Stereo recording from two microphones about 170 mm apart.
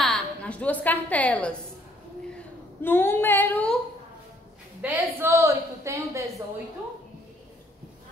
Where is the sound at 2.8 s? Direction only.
10° left (ahead or behind).